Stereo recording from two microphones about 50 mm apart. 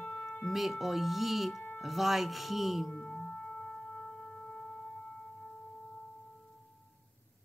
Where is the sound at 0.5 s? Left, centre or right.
Centre.